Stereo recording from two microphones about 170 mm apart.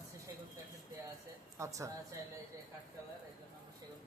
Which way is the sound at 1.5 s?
20° right (ahead or behind).